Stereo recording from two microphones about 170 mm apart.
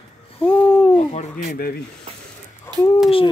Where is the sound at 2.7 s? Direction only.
25° right (ahead or behind).